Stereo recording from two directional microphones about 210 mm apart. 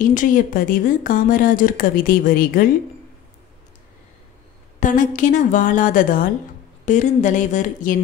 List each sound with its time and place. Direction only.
0.0 s speech: 40° left (ahead or behind)
4.7 s speech: 35° left (ahead or behind)